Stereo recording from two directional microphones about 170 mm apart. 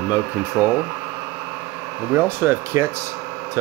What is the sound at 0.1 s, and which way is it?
Speech, 10° right (ahead or behind).